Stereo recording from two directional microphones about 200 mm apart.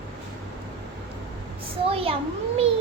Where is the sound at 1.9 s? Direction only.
30° right (ahead or behind).